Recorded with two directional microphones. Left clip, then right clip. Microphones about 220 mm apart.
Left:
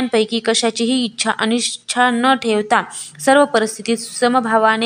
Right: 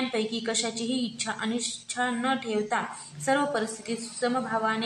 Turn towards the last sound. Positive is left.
turn(degrees=45)  # may be behind; listen again after turning